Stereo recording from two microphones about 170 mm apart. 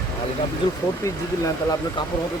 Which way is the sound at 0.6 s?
30° left (ahead or behind).